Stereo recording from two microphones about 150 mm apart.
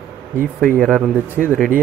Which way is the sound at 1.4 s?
Centre (ahead or behind).